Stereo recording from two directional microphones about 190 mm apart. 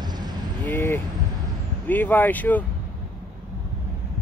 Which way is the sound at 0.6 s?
10° left (ahead or behind).